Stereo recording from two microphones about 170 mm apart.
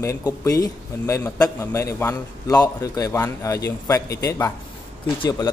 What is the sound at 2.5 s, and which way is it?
A man's voice, 20° left (ahead or behind).